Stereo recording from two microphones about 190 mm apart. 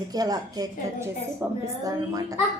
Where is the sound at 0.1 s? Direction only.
20° right (ahead or behind).